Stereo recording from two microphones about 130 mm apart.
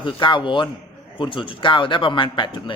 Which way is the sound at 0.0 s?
40° left (ahead or behind).